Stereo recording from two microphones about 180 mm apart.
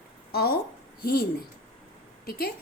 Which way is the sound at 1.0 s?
55° left (ahead or behind).